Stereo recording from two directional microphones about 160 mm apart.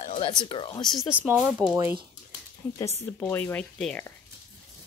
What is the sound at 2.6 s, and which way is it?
Speech, 15° left (ahead or behind).